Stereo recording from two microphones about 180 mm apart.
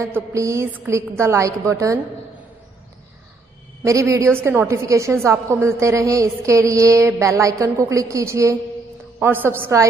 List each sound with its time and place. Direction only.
0.0 s a woman's voice: 15° right (ahead or behind)
3.8 s a woman's voice: 15° right (ahead or behind)